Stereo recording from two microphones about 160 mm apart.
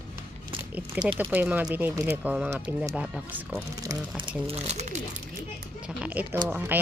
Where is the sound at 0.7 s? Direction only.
10° right (ahead or behind).